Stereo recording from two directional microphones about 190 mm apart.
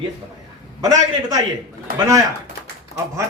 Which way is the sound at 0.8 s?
20° right (ahead or behind).